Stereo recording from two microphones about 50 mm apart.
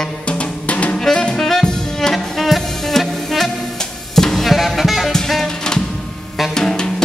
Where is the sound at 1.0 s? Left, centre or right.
Centre.